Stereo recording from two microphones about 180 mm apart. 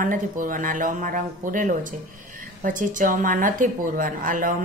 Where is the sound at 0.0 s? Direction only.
50° right (ahead or behind).